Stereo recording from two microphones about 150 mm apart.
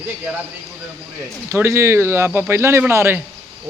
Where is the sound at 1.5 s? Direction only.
20° right (ahead or behind).